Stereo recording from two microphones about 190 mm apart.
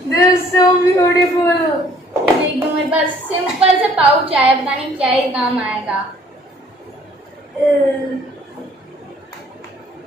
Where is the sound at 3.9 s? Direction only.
5° right (ahead or behind).